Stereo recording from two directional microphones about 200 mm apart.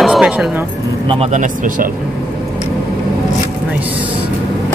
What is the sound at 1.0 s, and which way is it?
Speech, 35° right (ahead or behind).